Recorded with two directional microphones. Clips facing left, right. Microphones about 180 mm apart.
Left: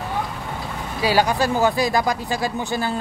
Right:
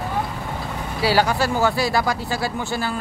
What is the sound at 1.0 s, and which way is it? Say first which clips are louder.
Speech: even; 15° left (ahead or behind).